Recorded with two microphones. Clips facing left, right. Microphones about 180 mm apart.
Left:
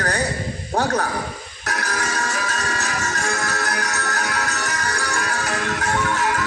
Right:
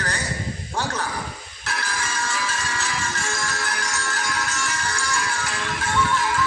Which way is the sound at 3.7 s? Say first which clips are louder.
Left 4 dB; 65° left (ahead or behind).